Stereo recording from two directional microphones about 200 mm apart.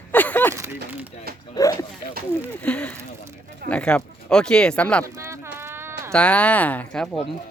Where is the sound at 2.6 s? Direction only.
5° left (ahead or behind).